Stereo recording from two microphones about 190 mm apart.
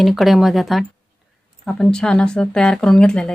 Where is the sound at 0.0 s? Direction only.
Centre (ahead or behind).